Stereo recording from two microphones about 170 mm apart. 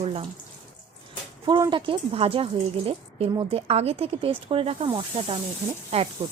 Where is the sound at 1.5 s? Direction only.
25° right (ahead or behind).